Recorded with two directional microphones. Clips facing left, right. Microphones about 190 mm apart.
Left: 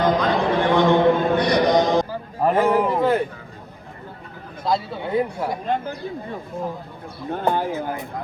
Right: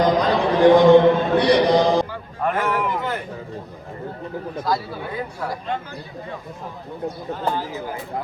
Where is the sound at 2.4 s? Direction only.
30° left (ahead or behind).